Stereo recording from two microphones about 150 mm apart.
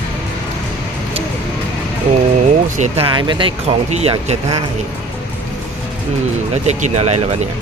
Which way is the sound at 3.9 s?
45° right (ahead or behind).